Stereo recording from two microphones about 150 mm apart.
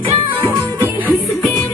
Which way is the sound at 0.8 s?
10° right (ahead or behind).